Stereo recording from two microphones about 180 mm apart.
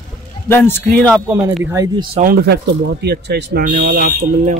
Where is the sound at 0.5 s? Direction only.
10° left (ahead or behind).